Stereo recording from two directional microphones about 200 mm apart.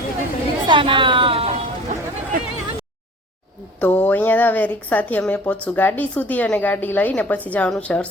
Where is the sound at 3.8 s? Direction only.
10° left (ahead or behind).